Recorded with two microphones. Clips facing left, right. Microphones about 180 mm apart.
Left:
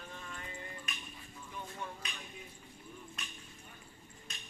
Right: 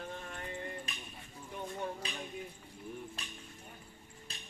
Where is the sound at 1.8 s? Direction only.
35° right (ahead or behind).